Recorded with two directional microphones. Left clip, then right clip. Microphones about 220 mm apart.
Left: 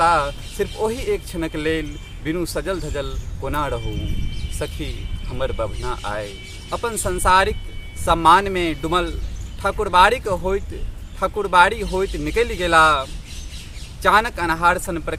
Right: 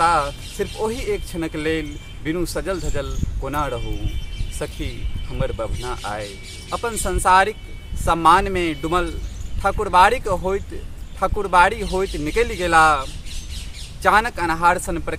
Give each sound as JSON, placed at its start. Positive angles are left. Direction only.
{"t": 0.0, "sound": "speech", "side_deg": 0}